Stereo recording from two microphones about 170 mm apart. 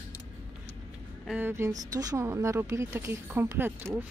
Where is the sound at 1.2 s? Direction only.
10° right (ahead or behind).